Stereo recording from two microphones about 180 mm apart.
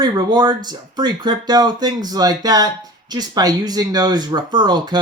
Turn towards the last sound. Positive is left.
turn(degrees=-25)  # may be behind; listen again after turning